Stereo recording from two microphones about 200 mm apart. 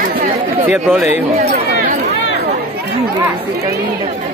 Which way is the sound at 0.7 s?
10° right (ahead or behind).